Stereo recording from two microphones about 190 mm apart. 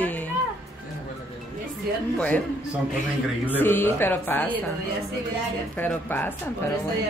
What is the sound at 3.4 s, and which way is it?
Speech, 10° left (ahead or behind).